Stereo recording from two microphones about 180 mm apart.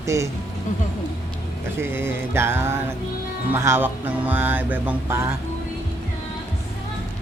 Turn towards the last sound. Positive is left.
turn(degrees=-15)  # may be behind; listen again after turning